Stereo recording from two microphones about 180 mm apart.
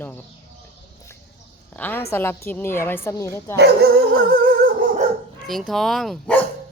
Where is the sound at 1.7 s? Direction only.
10° left (ahead or behind).